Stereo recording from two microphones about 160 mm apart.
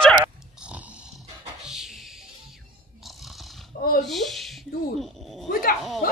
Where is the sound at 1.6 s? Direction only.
5° right (ahead or behind).